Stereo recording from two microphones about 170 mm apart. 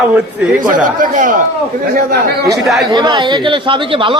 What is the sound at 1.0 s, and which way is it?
Speech, 50° right (ahead or behind).